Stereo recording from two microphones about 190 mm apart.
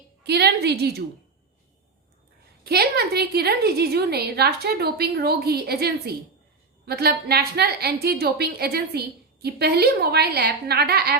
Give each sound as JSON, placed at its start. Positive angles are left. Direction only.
{"t": 0.2, "sound": "a woman's voice", "side_deg": -60}
{"t": 2.6, "sound": "a woman's voice", "side_deg": -55}